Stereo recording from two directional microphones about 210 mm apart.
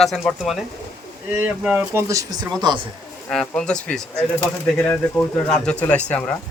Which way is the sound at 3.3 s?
5° left (ahead or behind).